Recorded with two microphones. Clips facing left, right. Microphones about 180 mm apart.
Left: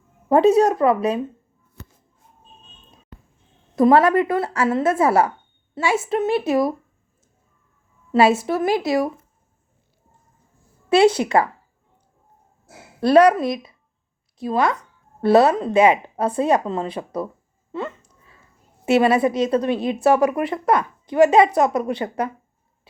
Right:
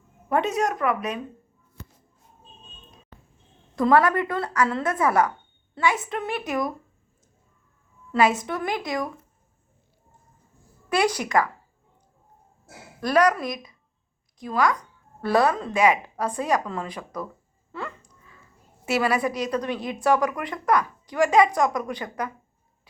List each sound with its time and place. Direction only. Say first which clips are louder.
0.3 s a woman's voice: left 9 dB; 30° left (ahead or behind)
3.8 s a woman's voice: left 5 dB; 25° left (ahead or behind)
8.1 s a woman's voice: left 5 dB; 25° left (ahead or behind)
10.8 s speech: left 8 dB; 25° left (ahead or behind)
13.0 s a woman's voice: left 7 dB; 30° left (ahead or behind)
17.7 s a sound: left 7 dB; 25° left (ahead or behind)
18.9 s a woman's voice: left 7 dB; 25° left (ahead or behind)